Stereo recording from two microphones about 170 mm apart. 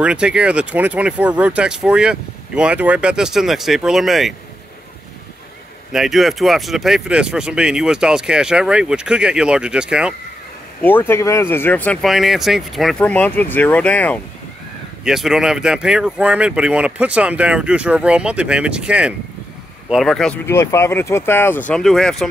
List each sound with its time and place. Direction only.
0.0 s speech: 5° right (ahead or behind)
5.9 s speech: centre (ahead or behind)
10.8 s speech: 10° left (ahead or behind)
15.0 s speech: centre (ahead or behind)
20.4 s speech: 15° left (ahead or behind)